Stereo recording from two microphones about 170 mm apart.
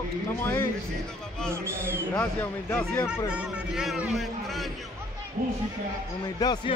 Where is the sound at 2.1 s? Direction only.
10° left (ahead or behind).